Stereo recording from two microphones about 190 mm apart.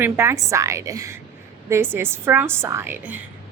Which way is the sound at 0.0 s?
15° right (ahead or behind).